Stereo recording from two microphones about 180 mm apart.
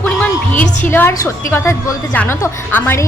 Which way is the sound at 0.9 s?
15° left (ahead or behind).